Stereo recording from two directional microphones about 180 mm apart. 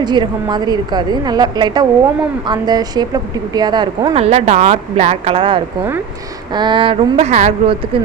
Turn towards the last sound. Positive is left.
turn(degrees=-40)  # may be behind; listen again after turning